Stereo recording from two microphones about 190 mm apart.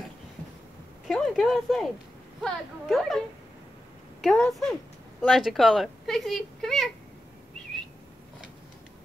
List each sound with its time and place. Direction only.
1.0 s speech: centre (ahead or behind)
4.2 s speech: centre (ahead or behind)